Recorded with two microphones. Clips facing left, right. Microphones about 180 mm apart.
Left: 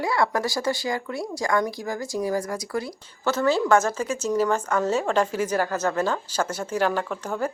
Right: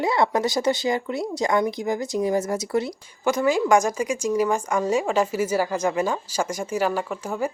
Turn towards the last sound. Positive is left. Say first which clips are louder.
# right 1 dB
turn(degrees=-10)  # may be behind; listen again after turning